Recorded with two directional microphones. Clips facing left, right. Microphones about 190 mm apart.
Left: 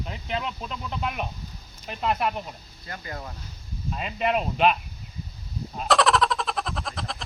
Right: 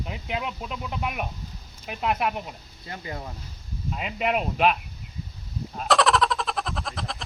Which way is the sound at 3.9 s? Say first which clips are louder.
Left 1 dB; 5° right (ahead or behind).